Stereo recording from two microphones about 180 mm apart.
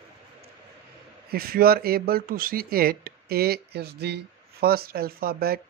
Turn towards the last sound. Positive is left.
turn(degrees=-55)  # may be behind; listen again after turning